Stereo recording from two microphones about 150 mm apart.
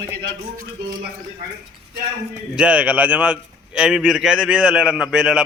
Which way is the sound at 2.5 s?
10° right (ahead or behind).